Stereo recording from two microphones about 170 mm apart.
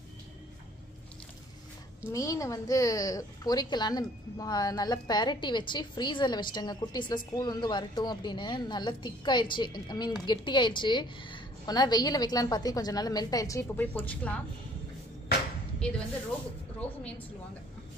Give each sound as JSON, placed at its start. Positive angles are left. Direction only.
{"t": 2.0, "sound": "a woman's voice", "side_deg": 15}
{"t": 15.8, "sound": "speech", "side_deg": 5}